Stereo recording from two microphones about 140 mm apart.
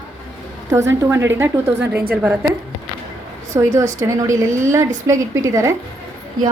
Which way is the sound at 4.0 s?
25° right (ahead or behind).